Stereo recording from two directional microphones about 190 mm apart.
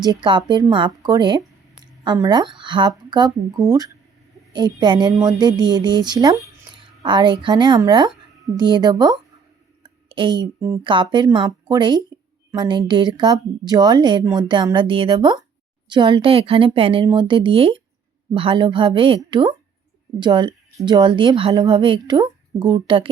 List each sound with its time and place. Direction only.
0.0 s a woman's voice: 25° right (ahead or behind)
9.8 s a sound: 25° right (ahead or behind)
10.8 s a woman's voice: 25° right (ahead or behind)